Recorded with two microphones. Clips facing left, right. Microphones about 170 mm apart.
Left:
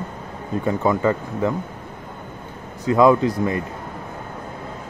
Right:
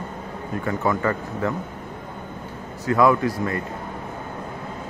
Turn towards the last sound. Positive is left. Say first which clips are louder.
# left 4 dB
turn(degrees=20)  # may be behind; listen again after turning